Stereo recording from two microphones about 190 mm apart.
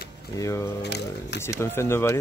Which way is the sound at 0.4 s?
15° left (ahead or behind).